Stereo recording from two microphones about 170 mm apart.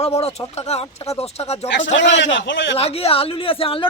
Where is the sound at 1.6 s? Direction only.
90° left.